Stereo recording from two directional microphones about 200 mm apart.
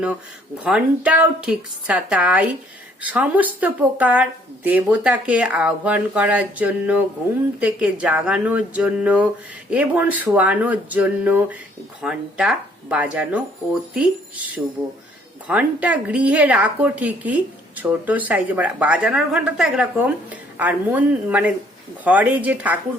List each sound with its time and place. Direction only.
0.6 s a woman's voice: 5° right (ahead or behind)